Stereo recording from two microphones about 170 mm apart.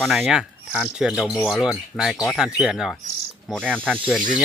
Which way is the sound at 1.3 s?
10° left (ahead or behind).